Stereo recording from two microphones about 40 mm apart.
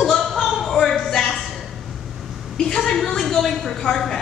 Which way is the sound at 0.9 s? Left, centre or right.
Centre.